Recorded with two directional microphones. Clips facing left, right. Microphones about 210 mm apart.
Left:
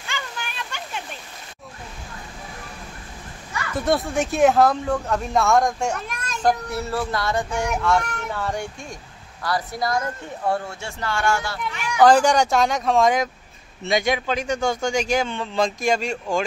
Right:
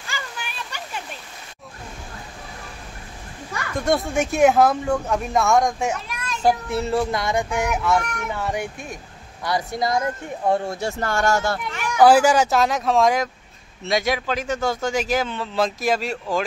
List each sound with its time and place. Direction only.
0.1 s a sound: 5° right (ahead or behind)
3.8 s a man's voice: centre (ahead or behind)
6.7 s a woman's voice: 20° right (ahead or behind)
7.6 s speech: 5° right (ahead or behind)
9.4 s a woman's voice: 20° right (ahead or behind)
10.7 s speech: 40° right (ahead or behind)
12.0 s a man's voice: 5° right (ahead or behind)